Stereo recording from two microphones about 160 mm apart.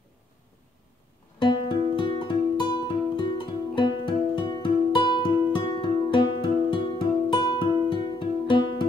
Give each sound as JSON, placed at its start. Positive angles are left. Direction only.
{"t": 1.4, "sound": "music", "side_deg": 30}